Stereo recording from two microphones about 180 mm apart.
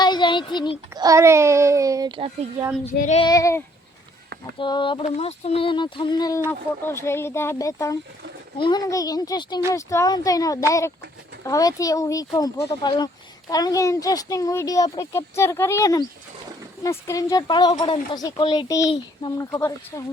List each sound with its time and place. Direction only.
0.0 s a sound: 25° left (ahead or behind)
0.9 s a child's voice: 20° right (ahead or behind)
3.0 s child singing: 40° left (ahead or behind)
3.2 s a child's voice: 20° left (ahead or behind)